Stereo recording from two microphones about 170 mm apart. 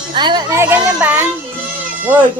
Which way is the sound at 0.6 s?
15° right (ahead or behind).